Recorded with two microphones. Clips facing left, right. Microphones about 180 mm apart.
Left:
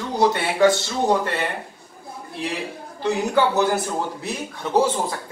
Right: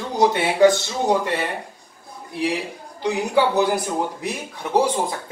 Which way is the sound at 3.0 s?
15° right (ahead or behind).